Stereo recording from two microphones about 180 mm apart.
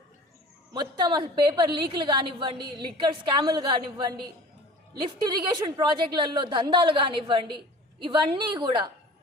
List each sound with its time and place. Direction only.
0.7 s a woman's voice: 25° right (ahead or behind)